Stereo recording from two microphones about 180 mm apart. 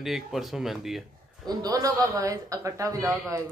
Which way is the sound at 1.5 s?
20° right (ahead or behind).